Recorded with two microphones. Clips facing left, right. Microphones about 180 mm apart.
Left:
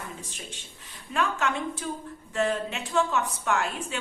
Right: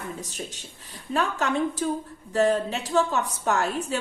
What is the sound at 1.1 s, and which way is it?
A woman's voice, 35° right (ahead or behind).